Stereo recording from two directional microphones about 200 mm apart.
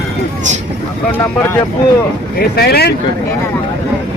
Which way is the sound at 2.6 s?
55° left (ahead or behind).